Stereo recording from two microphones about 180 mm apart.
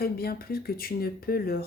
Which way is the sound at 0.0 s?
55° left (ahead or behind).